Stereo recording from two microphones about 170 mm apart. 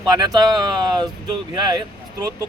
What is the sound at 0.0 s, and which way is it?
Speech, 25° right (ahead or behind).